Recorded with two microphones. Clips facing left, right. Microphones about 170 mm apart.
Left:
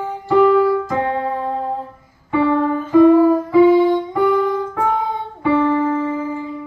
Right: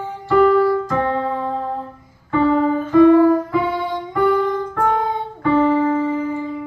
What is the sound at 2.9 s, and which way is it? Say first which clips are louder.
Music: left 1 dB; 5° left (ahead or behind).